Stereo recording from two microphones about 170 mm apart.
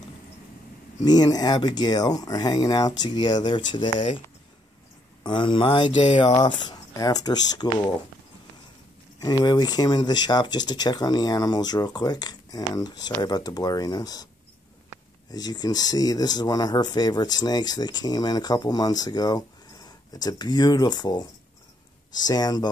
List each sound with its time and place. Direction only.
1.0 s speech: 25° left (ahead or behind)
5.2 s speech: 25° left (ahead or behind)
9.2 s speech: 25° left (ahead or behind)
15.3 s speech: 25° left (ahead or behind)